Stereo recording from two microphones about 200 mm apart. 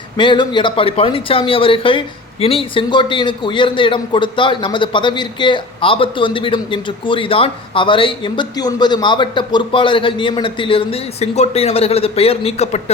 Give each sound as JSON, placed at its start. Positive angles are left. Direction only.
{"t": 0.2, "sound": "speech", "side_deg": 25}